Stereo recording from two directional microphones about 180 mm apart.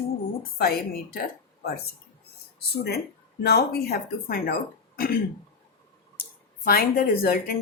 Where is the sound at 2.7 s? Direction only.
65° left (ahead or behind).